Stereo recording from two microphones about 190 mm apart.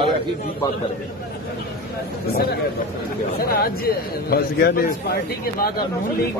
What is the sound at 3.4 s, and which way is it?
Speech, 50° left (ahead or behind).